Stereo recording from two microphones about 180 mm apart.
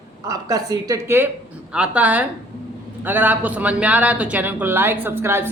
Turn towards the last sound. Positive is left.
turn(degrees=-10)  # may be behind; listen again after turning